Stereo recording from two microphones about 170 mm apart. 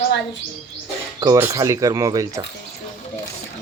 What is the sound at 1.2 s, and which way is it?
Speech, 15° right (ahead or behind).